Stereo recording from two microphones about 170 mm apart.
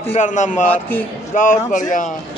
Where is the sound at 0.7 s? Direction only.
10° left (ahead or behind).